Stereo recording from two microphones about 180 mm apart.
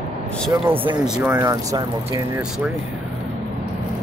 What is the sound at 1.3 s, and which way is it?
Speech, 15° right (ahead or behind).